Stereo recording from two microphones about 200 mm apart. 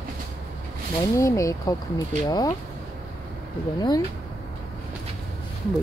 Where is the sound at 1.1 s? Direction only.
15° left (ahead or behind).